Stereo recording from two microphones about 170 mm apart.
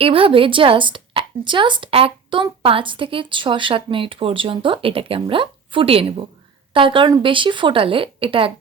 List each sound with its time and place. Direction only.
0.0 s a woman's voice: 30° right (ahead or behind)